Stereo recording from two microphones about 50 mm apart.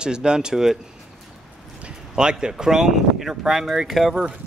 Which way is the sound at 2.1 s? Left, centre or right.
Centre.